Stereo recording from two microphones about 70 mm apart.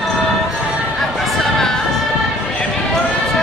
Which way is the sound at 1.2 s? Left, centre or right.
Centre.